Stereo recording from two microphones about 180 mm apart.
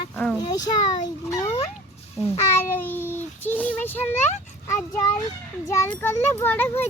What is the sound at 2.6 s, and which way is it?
A child's voice, 10° left (ahead or behind).